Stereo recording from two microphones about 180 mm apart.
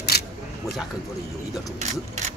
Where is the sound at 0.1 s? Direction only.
60° left (ahead or behind).